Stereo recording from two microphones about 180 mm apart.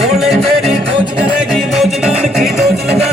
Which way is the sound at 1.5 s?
Centre (ahead or behind).